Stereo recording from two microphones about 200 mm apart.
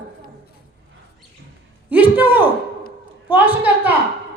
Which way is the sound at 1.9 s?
10° right (ahead or behind).